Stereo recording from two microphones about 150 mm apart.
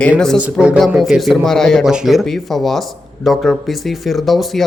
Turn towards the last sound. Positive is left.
turn(degrees=0)  # may be behind; listen again after turning